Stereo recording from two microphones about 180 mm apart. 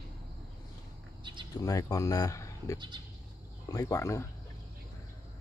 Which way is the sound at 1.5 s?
20° left (ahead or behind).